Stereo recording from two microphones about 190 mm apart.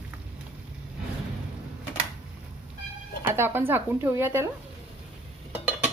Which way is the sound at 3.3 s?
10° right (ahead or behind).